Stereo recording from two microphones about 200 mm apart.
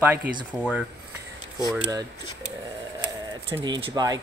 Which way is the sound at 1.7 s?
15° right (ahead or behind).